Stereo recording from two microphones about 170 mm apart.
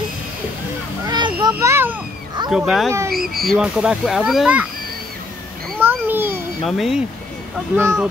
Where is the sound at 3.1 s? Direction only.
65° right (ahead or behind).